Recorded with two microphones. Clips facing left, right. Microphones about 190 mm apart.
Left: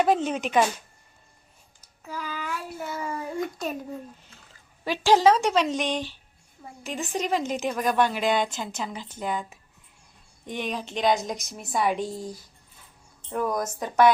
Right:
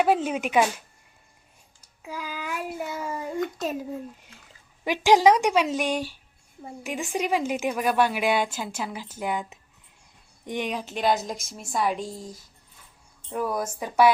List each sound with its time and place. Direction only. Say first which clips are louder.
0.0 s speech: even; 10° right (ahead or behind)
2.0 s speech: even; 10° right (ahead or behind)
3.0 s speech: even; centre (ahead or behind)
4.9 s speech: right 1 dB; 15° right (ahead or behind)